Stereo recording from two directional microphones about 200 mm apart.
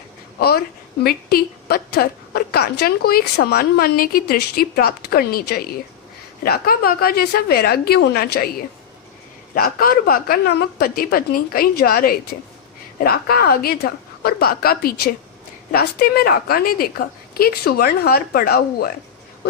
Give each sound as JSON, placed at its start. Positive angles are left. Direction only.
{"t": 0.3, "sound": "a woman's voice", "side_deg": 50}